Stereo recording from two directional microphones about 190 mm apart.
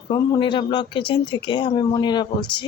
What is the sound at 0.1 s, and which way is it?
Speech, 25° left (ahead or behind).